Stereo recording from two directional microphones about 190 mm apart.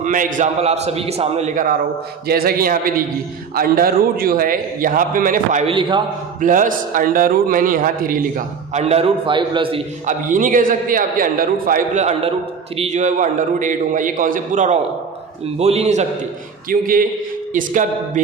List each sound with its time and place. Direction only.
0.0 s a man's voice: 45° right (ahead or behind)
2.2 s a man's voice: 55° right (ahead or behind); by 9.8 s 25° right (ahead or behind)
10.1 s a man's voice: 45° right (ahead or behind)
16.6 s a man's voice: 50° right (ahead or behind)